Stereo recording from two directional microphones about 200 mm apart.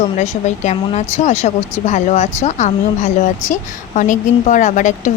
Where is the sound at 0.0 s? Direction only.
35° left (ahead or behind).